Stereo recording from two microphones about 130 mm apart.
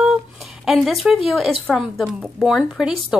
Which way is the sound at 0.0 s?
5° right (ahead or behind).